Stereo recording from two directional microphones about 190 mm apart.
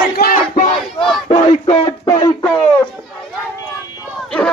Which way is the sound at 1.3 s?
25° left (ahead or behind).